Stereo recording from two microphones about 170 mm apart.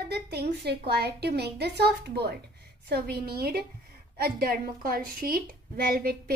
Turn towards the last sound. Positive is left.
turn(degrees=-60)  # may be behind; listen again after turning